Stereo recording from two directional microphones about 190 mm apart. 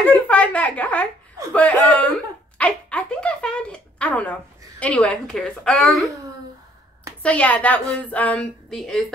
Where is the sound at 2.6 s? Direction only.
5° left (ahead or behind).